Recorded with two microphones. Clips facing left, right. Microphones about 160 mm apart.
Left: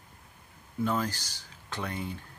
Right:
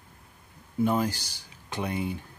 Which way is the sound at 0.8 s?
15° right (ahead or behind).